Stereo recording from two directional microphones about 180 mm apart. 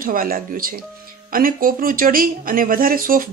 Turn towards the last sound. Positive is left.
turn(degrees=-50)  # may be behind; listen again after turning